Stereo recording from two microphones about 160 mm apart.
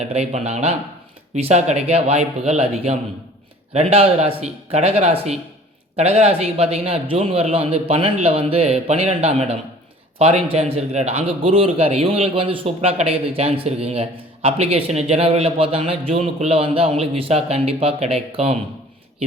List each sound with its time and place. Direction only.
0.0 s a man's voice: 45° right (ahead or behind)